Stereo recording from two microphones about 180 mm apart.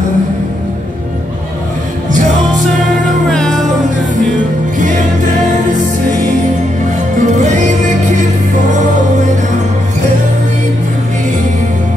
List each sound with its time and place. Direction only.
3.3 s music: centre (ahead or behind)
4.7 s music: 45° right (ahead or behind)
7.2 s music: 40° right (ahead or behind)